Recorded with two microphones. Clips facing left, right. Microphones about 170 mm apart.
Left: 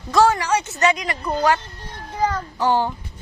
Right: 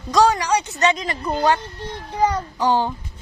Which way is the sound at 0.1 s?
15° right (ahead or behind).